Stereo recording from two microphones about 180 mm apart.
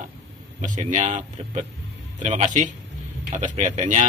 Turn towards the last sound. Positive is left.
turn(degrees=-40)  # may be behind; listen again after turning